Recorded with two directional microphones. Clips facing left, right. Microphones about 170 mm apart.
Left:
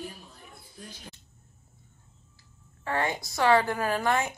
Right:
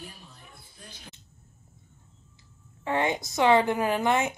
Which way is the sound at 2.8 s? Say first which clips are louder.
Right 3 dB; 20° right (ahead or behind).